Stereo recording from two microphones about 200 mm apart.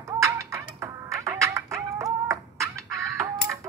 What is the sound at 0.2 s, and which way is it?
Music, 15° right (ahead or behind).